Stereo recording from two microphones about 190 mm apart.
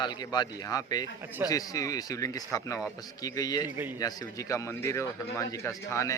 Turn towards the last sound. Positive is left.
turn(degrees=15)  # may be behind; listen again after turning